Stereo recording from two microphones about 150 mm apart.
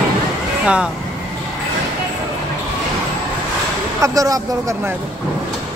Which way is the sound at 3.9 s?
20° right (ahead or behind).